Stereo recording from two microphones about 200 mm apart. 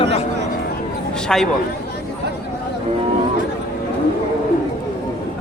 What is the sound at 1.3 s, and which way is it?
Speech, centre (ahead or behind).